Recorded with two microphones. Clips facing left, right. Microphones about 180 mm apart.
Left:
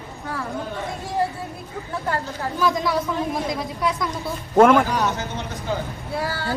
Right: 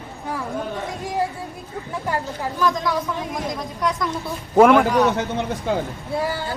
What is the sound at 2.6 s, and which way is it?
Speech, 10° left (ahead or behind).